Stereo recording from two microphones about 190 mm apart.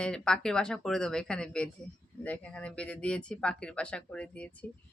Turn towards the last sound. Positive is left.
turn(degrees=5)  # may be behind; listen again after turning